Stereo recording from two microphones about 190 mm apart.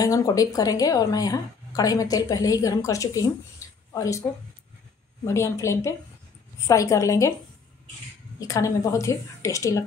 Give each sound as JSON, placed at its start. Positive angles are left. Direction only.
{"t": 0.0, "sound": "a woman's voice", "side_deg": 20}
{"t": 5.2, "sound": "a woman's voice", "side_deg": 15}
{"t": 8.4, "sound": "a woman's voice", "side_deg": 15}